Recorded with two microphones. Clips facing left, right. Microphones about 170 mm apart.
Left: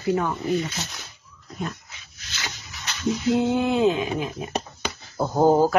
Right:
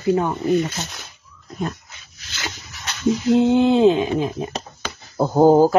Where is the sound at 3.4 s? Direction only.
20° right (ahead or behind).